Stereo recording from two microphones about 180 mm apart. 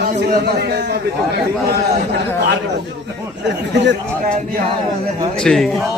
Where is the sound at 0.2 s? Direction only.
60° right (ahead or behind).